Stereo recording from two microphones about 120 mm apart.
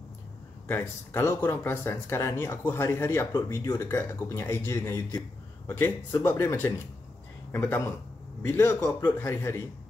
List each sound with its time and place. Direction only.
0.7 s speech: 20° left (ahead or behind)